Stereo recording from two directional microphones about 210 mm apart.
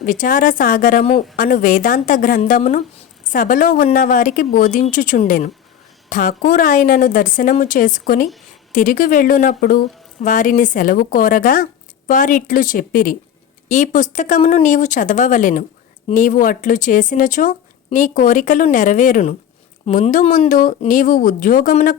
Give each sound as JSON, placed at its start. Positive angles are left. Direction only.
{"t": 0.0, "sound": "speech", "side_deg": 40}